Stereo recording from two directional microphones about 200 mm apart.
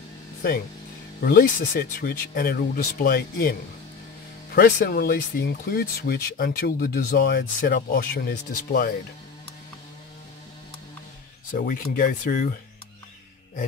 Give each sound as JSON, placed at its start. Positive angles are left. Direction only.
{"t": 1.2, "sound": "speech", "side_deg": 45}
{"t": 4.6, "sound": "speech", "side_deg": 45}
{"t": 11.5, "sound": "speech", "side_deg": 45}